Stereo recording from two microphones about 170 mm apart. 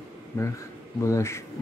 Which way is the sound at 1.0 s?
15° left (ahead or behind).